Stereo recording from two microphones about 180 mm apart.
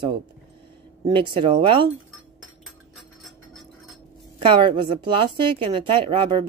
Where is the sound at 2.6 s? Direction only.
Centre (ahead or behind).